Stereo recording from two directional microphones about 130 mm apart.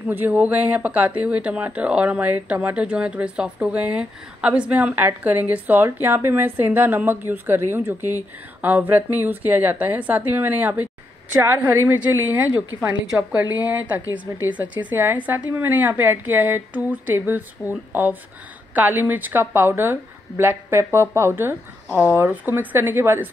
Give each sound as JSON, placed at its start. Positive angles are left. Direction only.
{"t": 0.1, "sound": "speech", "side_deg": -15}